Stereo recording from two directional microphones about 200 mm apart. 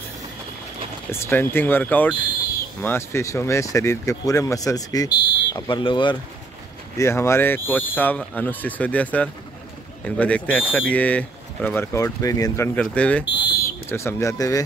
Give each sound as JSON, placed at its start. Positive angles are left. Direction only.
{"t": 1.3, "sound": "speech", "side_deg": 10}
{"t": 7.0, "sound": "speech", "side_deg": 15}
{"t": 13.2, "sound": "a sound", "side_deg": 60}
{"t": 13.8, "sound": "speech", "side_deg": 15}